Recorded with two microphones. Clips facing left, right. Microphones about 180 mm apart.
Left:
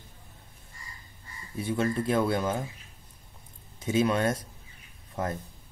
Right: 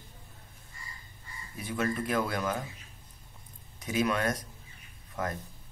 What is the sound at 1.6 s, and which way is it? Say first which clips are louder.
Speech: left 4 dB; 30° left (ahead or behind).